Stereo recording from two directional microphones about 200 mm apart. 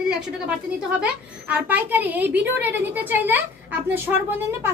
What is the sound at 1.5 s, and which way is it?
A woman's voice, 10° right (ahead or behind).